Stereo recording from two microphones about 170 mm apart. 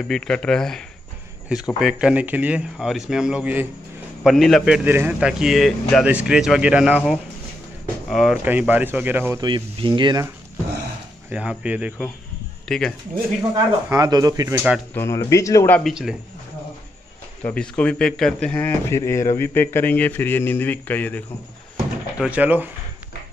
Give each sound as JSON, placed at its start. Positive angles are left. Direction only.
{"t": 0.1, "sound": "speech", "side_deg": 5}
{"t": 8.1, "sound": "speech", "side_deg": 0}
{"t": 9.4, "sound": "speech", "side_deg": -30}
{"t": 11.2, "sound": "speech", "side_deg": -5}
{"t": 12.6, "sound": "speech", "side_deg": 5}
{"t": 13.4, "sound": "speech", "side_deg": -20}
{"t": 15.0, "sound": "a man's voice", "side_deg": 15}
{"t": 15.8, "sound": "speech", "side_deg": -5}
{"t": 17.4, "sound": "a man's voice", "side_deg": 10}
{"t": 22.2, "sound": "speech", "side_deg": -10}